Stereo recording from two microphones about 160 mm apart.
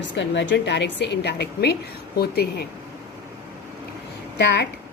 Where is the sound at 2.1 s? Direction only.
80° left.